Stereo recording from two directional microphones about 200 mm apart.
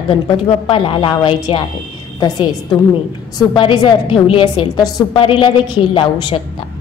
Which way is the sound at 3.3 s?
20° left (ahead or behind).